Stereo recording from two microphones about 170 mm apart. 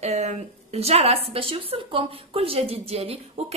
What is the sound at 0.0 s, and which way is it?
A woman's voice, 40° right (ahead or behind).